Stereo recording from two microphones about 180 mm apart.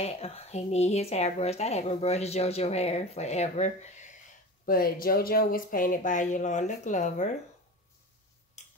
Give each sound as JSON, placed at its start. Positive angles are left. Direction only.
{"t": 0.0, "sound": "speech", "side_deg": 35}
{"t": 4.6, "sound": "speech", "side_deg": 55}
{"t": 8.6, "sound": "tick-tock", "side_deg": 40}